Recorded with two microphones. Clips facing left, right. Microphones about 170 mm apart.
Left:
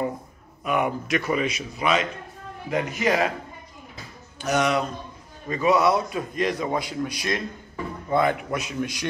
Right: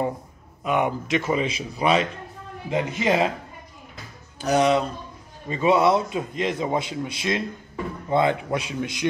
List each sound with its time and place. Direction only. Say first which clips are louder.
0.7 s a man's voice: right 1 dB; 20° right (ahead or behind)
4.4 s a man's voice: right 3 dB; 30° right (ahead or behind)